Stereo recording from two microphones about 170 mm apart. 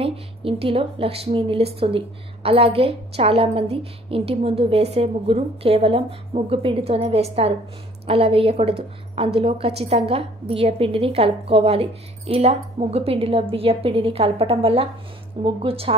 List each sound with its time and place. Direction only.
0.0 s a woman's voice: 35° right (ahead or behind)